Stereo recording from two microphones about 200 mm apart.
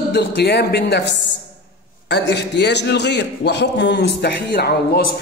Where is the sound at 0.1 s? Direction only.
60° left (ahead or behind).